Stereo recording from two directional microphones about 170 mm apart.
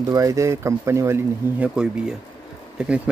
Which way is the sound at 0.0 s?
20° right (ahead or behind).